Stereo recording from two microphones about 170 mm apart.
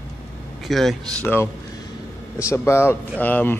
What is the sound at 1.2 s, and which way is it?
Speech, 10° left (ahead or behind).